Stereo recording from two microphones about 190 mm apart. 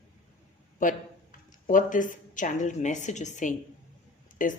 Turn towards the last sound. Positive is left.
turn(degrees=45)  # may be behind; listen again after turning